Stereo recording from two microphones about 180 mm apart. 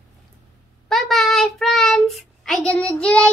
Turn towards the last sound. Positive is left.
turn(degrees=5)  # may be behind; listen again after turning